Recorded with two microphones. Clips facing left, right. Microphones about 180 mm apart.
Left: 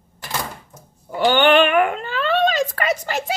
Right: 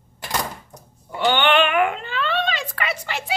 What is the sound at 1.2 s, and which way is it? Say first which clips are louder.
Speech: left 4 dB; 40° left (ahead or behind).